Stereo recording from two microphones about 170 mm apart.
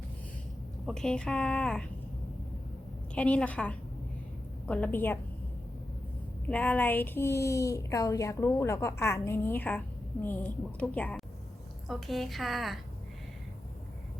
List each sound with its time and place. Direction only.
0.9 s a woman's voice: 5° left (ahead or behind)
3.2 s a woman's voice: 5° left (ahead or behind)
6.5 s a woman's voice: 10° left (ahead or behind)